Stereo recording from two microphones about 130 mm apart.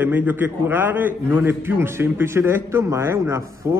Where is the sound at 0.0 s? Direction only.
15° right (ahead or behind).